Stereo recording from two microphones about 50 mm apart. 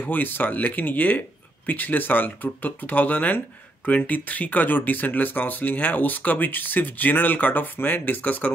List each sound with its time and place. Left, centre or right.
0.0 s speech: left